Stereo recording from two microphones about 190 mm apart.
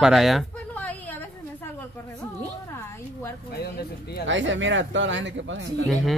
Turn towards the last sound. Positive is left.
turn(degrees=0)  # may be behind; listen again after turning